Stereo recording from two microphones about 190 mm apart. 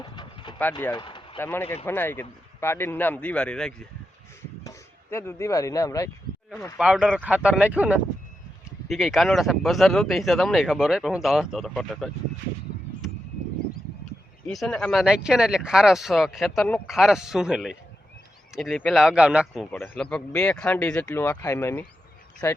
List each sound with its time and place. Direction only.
0.0 s a sound: 25° left (ahead or behind)
1.4 s a man's voice: 10° left (ahead or behind)
5.1 s a man's voice: 15° left (ahead or behind)
6.7 s speech: 5° right (ahead or behind)
14.4 s speech: 5° left (ahead or behind)
19.9 s a man's voice: 5° left (ahead or behind)